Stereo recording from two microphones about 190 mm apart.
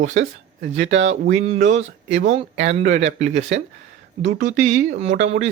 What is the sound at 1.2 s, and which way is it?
Speech, 40° right (ahead or behind).